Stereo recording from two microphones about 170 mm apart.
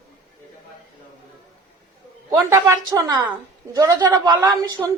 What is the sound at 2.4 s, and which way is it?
A woman's voice, 15° right (ahead or behind).